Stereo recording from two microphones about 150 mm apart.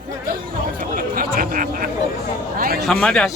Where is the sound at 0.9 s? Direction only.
70° right (ahead or behind).